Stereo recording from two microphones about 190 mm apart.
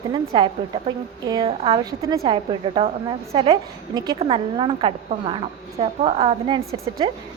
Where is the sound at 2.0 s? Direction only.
20° right (ahead or behind).